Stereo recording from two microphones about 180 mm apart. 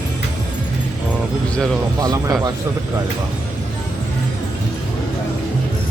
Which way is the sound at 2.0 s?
20° right (ahead or behind).